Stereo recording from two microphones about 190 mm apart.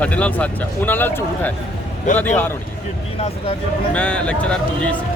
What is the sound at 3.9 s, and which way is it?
Speech, 5° left (ahead or behind).